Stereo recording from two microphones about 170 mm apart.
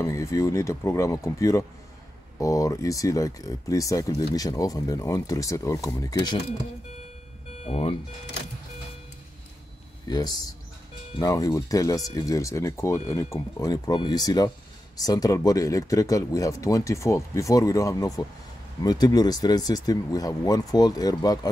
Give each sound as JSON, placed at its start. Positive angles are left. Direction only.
{"t": 0.0, "sound": "speech", "side_deg": 20}
{"t": 7.6, "sound": "speech", "side_deg": 35}
{"t": 10.0, "sound": "speech", "side_deg": 25}